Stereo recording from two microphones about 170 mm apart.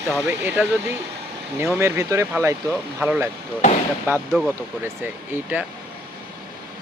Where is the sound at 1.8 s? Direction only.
15° right (ahead or behind).